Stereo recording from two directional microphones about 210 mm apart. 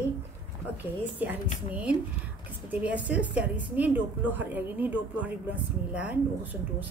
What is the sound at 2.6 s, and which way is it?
A woman's voice, 5° right (ahead or behind).